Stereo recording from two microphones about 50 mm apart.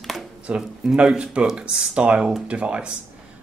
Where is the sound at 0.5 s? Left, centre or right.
Right.